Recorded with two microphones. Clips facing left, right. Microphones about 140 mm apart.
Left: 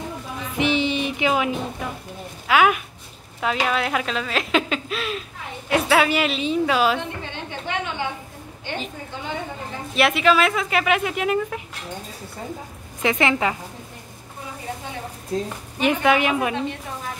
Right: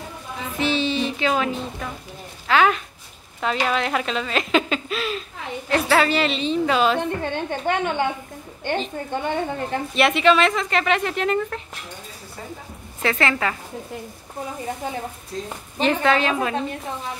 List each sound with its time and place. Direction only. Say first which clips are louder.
0.6 s music: left 1 dB; 15° left (ahead or behind)
2.4 s speech: even; 10° left (ahead or behind)
7.0 s a woman's voice: right 7 dB; 50° right (ahead or behind)
9.1 s a woman's voice: right 7 dB; 55° right (ahead or behind)
9.9 s speech: right 1 dB; centre (ahead or behind)
13.0 s a woman's voice: left 2 dB; 15° left (ahead or behind)
15.8 s a woman's voice: even; 10° left (ahead or behind)